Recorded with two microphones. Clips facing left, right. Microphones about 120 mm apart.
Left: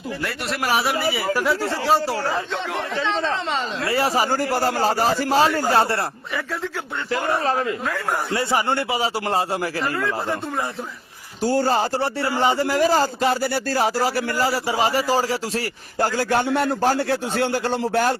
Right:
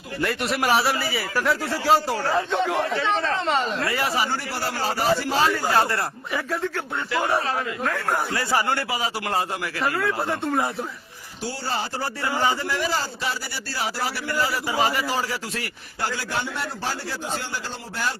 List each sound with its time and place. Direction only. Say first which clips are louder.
0.2 s speech: right 5 dB; centre (ahead or behind)
1.6 s speech: left 3 dB; 25° left (ahead or behind)
1.9 s speech: right 1 dB; centre (ahead or behind)
2.7 s a man's voice: right 1 dB; 10° right (ahead or behind)
3.4 s speech: right 2 dB; centre (ahead or behind)
3.8 s speech: left 4 dB; 30° left (ahead or behind)
7.1 s speech: left 2 dB; 35° left (ahead or behind)
9.8 s speech: even; 10° right (ahead or behind)
11.4 s speech: left 9 dB; 45° left (ahead or behind)
12.4 s speech: left 4 dB; 25° left (ahead or behind)
12.6 s speech: left 7 dB; 40° left (ahead or behind); by 18.1 s 60° left (ahead or behind)